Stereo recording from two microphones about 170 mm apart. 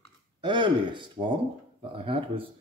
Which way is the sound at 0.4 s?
30° right (ahead or behind).